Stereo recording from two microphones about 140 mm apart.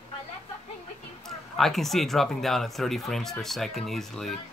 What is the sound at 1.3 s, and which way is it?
Speech, centre (ahead or behind).